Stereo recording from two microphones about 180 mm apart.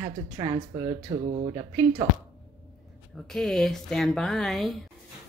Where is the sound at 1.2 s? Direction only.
40° right (ahead or behind).